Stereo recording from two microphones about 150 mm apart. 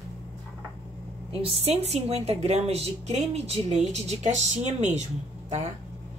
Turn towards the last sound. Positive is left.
turn(degrees=-50)  # may be behind; listen again after turning